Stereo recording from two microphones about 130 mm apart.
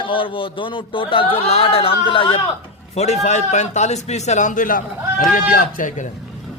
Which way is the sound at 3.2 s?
65° left (ahead or behind).